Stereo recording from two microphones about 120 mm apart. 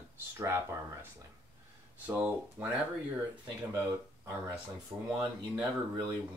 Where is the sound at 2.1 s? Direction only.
15° right (ahead or behind).